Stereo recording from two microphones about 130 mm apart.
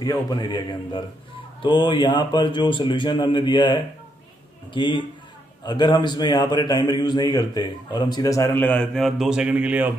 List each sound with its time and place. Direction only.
0.0 s a man's voice: 30° left (ahead or behind); by 9.9 s 10° right (ahead or behind)